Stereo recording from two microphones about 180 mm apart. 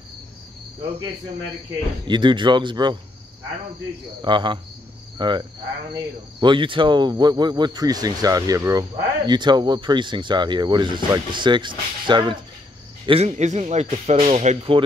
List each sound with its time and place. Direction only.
2.0 s speech: 25° right (ahead or behind)
4.2 s speech: 25° right (ahead or behind)
5.1 s cricket: 25° right (ahead or behind)
5.9 s speech: 25° right (ahead or behind)